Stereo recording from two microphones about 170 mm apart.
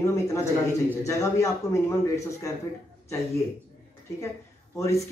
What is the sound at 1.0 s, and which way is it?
Speech, 20° left (ahead or behind).